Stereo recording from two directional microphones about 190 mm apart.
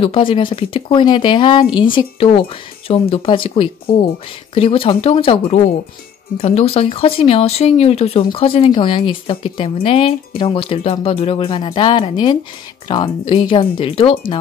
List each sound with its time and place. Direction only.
0.0 s speech: 30° left (ahead or behind)